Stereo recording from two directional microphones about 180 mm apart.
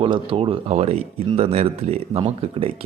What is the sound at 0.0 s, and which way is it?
Speech, 30° right (ahead or behind).